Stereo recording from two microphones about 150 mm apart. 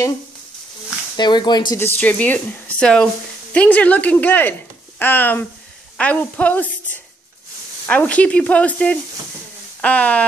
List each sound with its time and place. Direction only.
1.1 s speech: 30° left (ahead or behind)
1.8 s a woman's voice: 10° left (ahead or behind)